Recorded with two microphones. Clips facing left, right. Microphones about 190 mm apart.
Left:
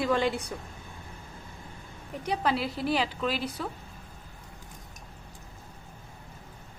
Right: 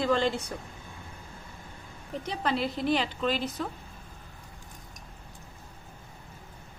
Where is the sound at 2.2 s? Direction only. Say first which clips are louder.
Left 2 dB; 5° left (ahead or behind).